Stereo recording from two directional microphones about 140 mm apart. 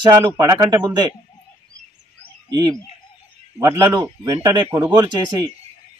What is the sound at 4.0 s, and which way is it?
A man's voice, 30° right (ahead or behind).